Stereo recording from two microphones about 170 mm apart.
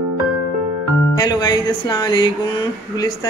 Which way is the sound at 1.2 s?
25° left (ahead or behind).